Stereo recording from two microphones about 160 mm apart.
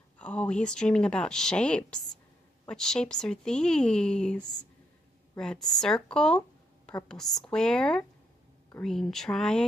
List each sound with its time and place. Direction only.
0.2 s a woman's voice: 5° left (ahead or behind)
5.4 s a woman's voice: 5° left (ahead or behind)